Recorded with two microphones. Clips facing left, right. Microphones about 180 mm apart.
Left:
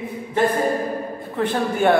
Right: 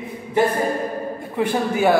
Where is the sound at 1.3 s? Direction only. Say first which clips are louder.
Right 1 dB; 10° right (ahead or behind).